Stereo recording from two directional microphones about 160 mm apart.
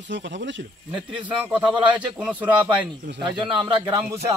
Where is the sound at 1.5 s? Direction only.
10° right (ahead or behind).